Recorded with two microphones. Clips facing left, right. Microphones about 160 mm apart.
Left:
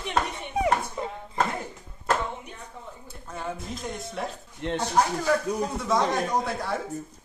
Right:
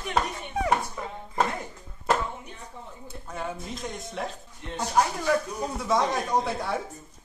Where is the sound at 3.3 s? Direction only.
Centre (ahead or behind).